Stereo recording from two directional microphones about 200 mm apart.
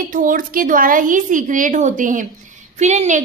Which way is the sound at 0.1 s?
45° right (ahead or behind).